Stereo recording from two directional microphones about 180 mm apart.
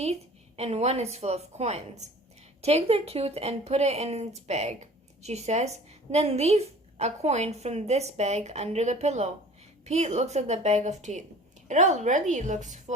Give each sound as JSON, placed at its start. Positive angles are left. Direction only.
{"t": 0.0, "sound": "a woman's voice", "side_deg": -35}